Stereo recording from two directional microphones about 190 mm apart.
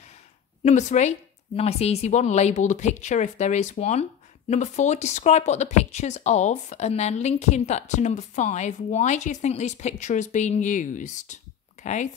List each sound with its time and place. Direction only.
0.7 s speech: 40° left (ahead or behind)